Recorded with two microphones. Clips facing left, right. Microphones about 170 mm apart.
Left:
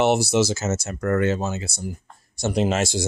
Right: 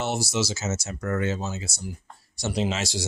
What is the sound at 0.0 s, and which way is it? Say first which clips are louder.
Speech: left 8 dB; 65° left (ahead or behind).